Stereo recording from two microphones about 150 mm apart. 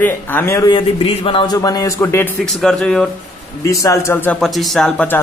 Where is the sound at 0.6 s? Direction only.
35° left (ahead or behind).